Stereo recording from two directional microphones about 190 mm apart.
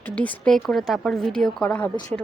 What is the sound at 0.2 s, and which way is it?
A woman's voice, 5° left (ahead or behind).